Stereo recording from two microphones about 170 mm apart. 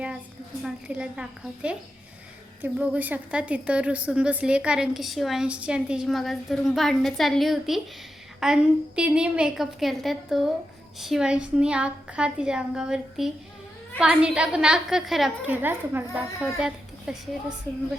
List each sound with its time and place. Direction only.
0.6 s a woman's voice: 5° right (ahead or behind)